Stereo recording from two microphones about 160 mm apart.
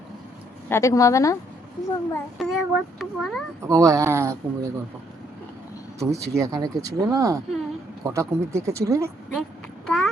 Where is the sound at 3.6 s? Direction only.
20° right (ahead or behind).